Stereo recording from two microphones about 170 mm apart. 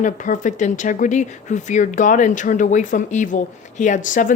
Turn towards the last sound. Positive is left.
turn(degrees=50)  # may be behind; listen again after turning